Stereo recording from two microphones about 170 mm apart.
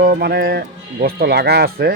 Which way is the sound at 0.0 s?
60° right (ahead or behind).